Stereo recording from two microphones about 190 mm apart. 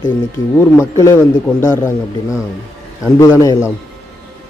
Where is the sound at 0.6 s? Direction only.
15° left (ahead or behind).